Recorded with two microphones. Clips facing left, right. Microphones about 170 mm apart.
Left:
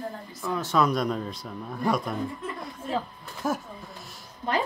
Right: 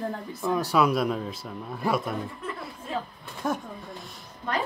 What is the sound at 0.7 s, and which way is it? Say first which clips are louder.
Speech: even; 5° right (ahead or behind).